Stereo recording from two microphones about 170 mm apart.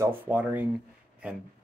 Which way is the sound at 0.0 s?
10° right (ahead or behind).